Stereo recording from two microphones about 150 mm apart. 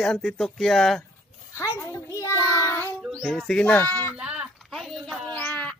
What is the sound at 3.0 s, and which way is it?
Speech, centre (ahead or behind).